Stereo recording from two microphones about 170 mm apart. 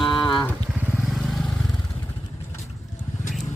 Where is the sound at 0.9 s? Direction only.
5° right (ahead or behind).